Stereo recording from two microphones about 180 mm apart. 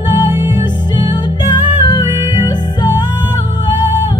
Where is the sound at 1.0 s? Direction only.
25° left (ahead or behind).